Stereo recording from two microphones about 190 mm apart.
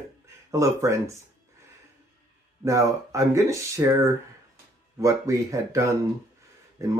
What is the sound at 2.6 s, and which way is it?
Speech, 15° right (ahead or behind).